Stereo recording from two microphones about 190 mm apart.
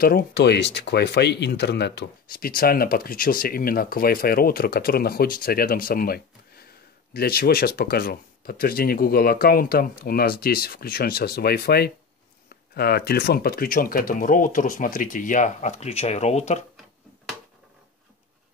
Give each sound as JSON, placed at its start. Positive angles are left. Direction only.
{"t": 0.0, "sound": "speech", "side_deg": 50}